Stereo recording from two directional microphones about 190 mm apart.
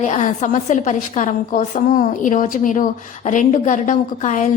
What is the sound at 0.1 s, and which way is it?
A woman's voice, 40° left (ahead or behind).